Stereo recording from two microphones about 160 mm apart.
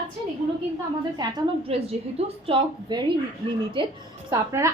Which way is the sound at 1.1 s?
25° right (ahead or behind).